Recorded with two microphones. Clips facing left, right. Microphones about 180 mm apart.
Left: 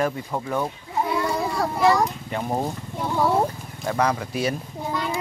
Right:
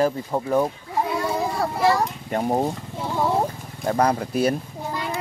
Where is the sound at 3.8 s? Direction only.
35° right (ahead or behind).